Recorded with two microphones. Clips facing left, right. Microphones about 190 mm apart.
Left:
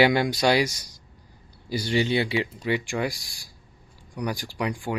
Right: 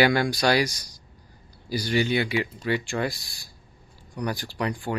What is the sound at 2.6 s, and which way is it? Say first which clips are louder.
Speech: even; 15° left (ahead or behind).